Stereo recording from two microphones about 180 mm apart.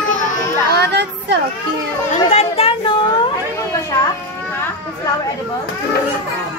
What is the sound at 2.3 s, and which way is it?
Chatter, 35° left (ahead or behind).